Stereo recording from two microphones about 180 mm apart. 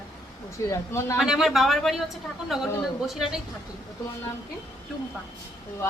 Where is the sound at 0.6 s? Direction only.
15° left (ahead or behind).